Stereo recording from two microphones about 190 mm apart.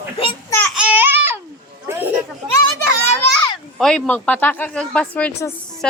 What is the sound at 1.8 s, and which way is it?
Chatter, 10° right (ahead or behind).